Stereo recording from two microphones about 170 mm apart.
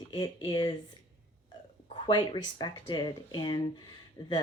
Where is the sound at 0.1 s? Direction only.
30° left (ahead or behind).